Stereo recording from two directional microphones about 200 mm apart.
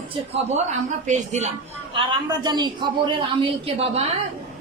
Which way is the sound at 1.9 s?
20° right (ahead or behind).